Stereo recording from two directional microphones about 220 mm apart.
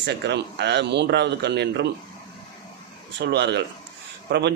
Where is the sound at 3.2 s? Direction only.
50° right (ahead or behind).